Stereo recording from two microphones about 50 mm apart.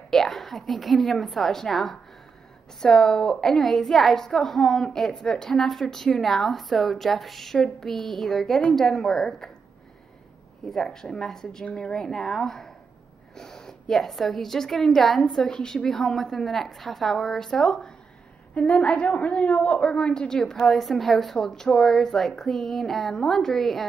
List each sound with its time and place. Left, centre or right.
0.1 s a woman's voice: centre
10.6 s a woman's voice: centre
18.5 s a woman's voice: left; by 23.9 s centre